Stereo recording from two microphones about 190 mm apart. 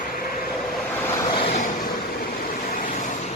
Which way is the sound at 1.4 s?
40° left (ahead or behind).